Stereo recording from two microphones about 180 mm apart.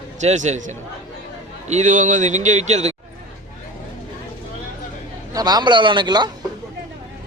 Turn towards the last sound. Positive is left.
turn(degrees=-25)  # may be behind; listen again after turning